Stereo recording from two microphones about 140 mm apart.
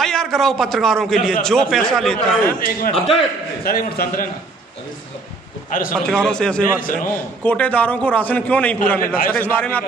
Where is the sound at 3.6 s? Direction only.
90° left.